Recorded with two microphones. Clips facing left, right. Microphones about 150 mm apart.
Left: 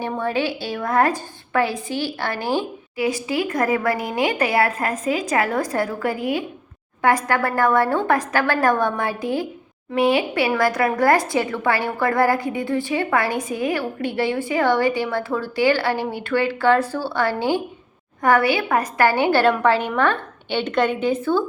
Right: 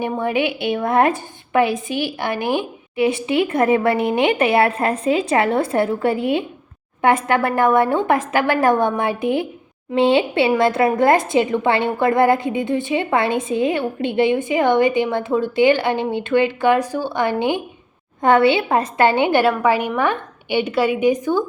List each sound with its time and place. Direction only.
0.0 s a woman's voice: 15° right (ahead or behind)